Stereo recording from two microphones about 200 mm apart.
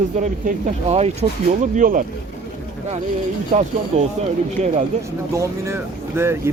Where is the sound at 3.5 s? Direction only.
35° right (ahead or behind).